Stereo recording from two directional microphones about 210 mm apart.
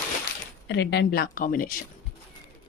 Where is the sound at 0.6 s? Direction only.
55° left (ahead or behind).